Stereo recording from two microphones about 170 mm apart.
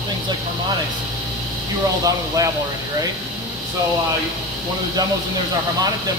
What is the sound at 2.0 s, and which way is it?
Speech, 20° right (ahead or behind).